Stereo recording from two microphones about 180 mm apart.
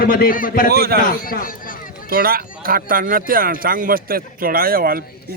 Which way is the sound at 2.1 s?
55° right (ahead or behind).